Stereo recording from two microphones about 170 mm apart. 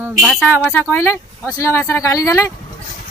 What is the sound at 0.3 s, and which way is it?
Speech, 5° left (ahead or behind).